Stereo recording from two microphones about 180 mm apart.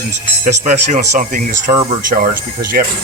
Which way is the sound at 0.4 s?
45° right (ahead or behind).